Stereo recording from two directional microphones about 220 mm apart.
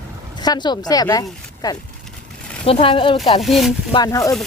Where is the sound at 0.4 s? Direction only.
20° left (ahead or behind).